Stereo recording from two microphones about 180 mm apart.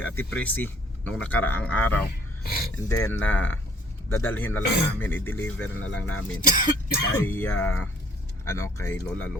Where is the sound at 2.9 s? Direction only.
15° left (ahead or behind).